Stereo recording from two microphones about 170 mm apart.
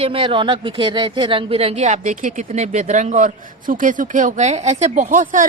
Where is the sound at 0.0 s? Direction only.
30° right (ahead or behind).